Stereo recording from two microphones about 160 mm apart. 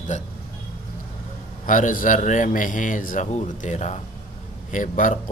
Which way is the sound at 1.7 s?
55° left (ahead or behind).